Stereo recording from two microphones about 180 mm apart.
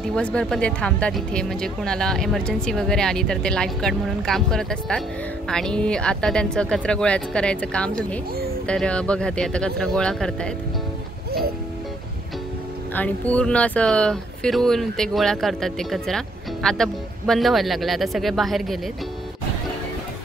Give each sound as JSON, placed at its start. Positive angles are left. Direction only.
{"t": 0.1, "sound": "speech", "side_deg": 5}
{"t": 12.9, "sound": "speech", "side_deg": 10}